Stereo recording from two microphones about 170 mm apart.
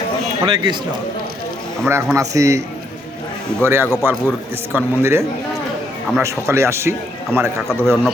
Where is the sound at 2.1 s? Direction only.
20° right (ahead or behind).